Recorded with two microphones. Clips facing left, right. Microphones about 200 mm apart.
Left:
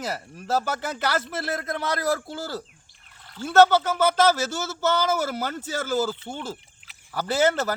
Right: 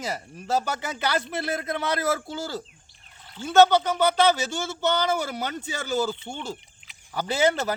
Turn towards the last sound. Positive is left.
turn(degrees=0)  # may be behind; listen again after turning